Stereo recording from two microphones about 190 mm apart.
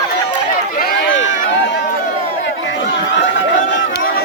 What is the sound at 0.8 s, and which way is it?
Run, 50° left (ahead or behind).